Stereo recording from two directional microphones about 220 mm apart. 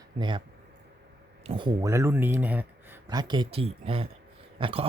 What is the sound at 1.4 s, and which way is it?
Speech, 25° right (ahead or behind).